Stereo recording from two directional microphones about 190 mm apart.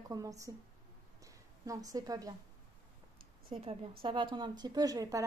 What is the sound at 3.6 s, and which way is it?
A woman's voice, 30° right (ahead or behind).